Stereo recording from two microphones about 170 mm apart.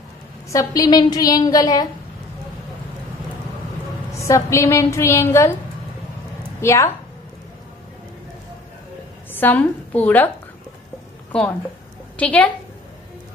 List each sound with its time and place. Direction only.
0.5 s a woman's voice: 20° left (ahead or behind)
4.1 s a woman's voice: 15° left (ahead or behind)
6.6 s a woman's voice: 15° left (ahead or behind)
9.3 s a woman's voice: 10° left (ahead or behind)
12.2 s a woman's voice: 5° left (ahead or behind)